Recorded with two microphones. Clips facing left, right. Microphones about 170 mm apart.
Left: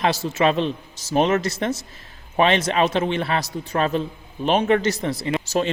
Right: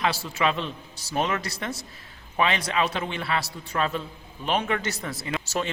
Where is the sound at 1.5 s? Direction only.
20° left (ahead or behind).